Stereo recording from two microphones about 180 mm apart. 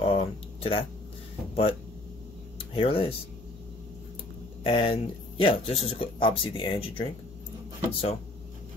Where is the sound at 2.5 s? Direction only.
30° left (ahead or behind).